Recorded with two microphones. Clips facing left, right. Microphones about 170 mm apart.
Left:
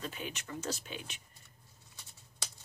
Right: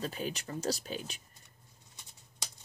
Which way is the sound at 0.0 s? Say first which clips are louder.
Right 5 dB; 35° right (ahead or behind).